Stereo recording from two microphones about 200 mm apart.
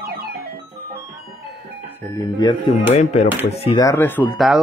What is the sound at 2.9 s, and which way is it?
Speech, 35° left (ahead or behind).